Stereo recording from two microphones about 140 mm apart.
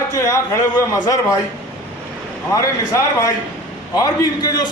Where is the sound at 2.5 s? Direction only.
20° left (ahead or behind).